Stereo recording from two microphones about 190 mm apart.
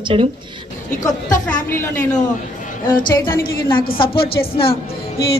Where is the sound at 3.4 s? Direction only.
50° left (ahead or behind).